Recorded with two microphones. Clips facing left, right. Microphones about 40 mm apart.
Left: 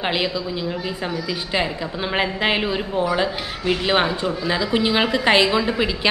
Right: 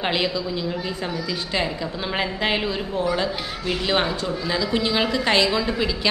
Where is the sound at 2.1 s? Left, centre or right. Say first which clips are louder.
Left 3 dB; centre.